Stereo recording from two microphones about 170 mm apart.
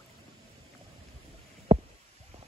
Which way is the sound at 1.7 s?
35° right (ahead or behind).